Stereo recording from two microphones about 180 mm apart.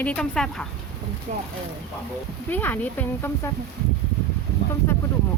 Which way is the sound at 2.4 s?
10° left (ahead or behind).